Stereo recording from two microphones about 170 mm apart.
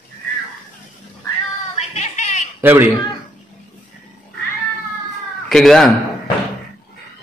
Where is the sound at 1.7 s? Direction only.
40° left (ahead or behind).